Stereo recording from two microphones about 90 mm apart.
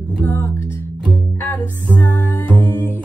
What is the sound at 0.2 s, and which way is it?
Music, 20° left (ahead or behind).